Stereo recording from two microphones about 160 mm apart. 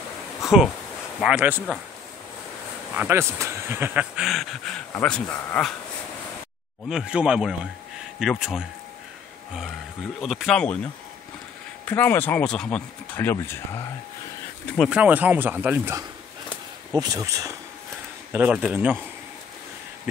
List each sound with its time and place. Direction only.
0.4 s a sound: 5° right (ahead or behind)
1.2 s speech: 10° right (ahead or behind)
3.0 s speech: 15° right (ahead or behind); by 5.7 s 5° left (ahead or behind)
6.9 s speech: 5° right (ahead or behind)
10.2 s speech: centre (ahead or behind)
11.8 s speech: 15° left (ahead or behind)
14.7 s speech: centre (ahead or behind); by 17.6 s 20° right (ahead or behind)
18.3 s speech: 10° right (ahead or behind)